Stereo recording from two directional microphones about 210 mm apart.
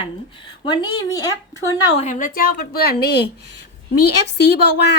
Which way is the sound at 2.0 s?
35° left (ahead or behind).